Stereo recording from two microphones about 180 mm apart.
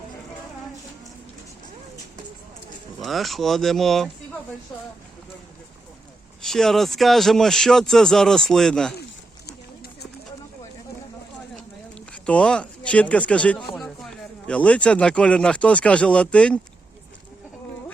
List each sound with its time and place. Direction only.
3.0 s speech: centre (ahead or behind)
6.4 s speech: 5° left (ahead or behind)
9.5 s clip-clop: 65° left (ahead or behind)
11.9 s speech: 5° left (ahead or behind)